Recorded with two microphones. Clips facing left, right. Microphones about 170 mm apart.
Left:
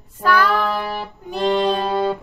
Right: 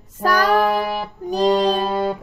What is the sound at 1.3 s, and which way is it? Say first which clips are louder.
Music: right 3 dB; 40° right (ahead or behind).